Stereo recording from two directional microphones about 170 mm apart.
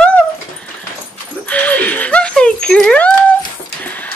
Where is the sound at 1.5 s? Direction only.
10° left (ahead or behind).